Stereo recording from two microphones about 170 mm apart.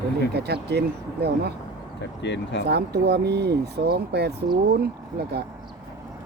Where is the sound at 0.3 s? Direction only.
75° right (ahead or behind).